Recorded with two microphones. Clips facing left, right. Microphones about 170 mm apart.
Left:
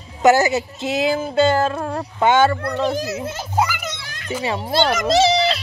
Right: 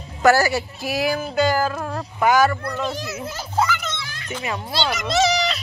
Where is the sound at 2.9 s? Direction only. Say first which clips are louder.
Left 6 dB; 45° left (ahead or behind).